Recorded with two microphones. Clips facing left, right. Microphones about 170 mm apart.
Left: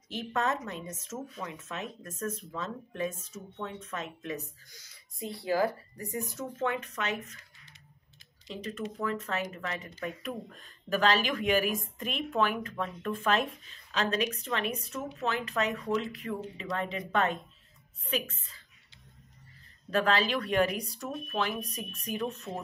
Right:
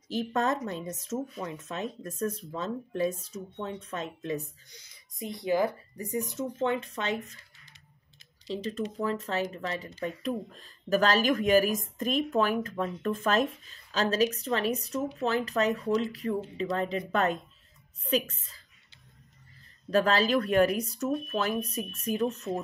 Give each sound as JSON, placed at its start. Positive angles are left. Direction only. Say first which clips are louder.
{"t": 0.1, "sound": "a woman's voice", "louder": "right 3 dB", "side_deg": -35}
{"t": 8.5, "sound": "speech", "louder": "right 4 dB", "side_deg": -35}
{"t": 19.9, "sound": "speech", "louder": "right 3 dB", "side_deg": -40}